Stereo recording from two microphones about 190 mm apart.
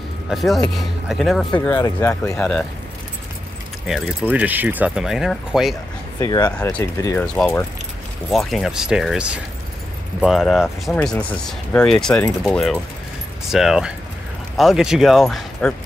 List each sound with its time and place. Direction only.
0.3 s speech: centre (ahead or behind)
3.8 s speech: 5° right (ahead or behind)
6.1 s speech: 20° left (ahead or behind); by 15.7 s centre (ahead or behind)